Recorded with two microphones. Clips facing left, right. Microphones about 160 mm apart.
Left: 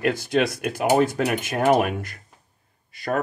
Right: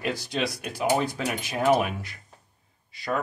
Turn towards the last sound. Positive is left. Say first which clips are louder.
# left 3 dB
turn(degrees=50)  # may be behind; listen again after turning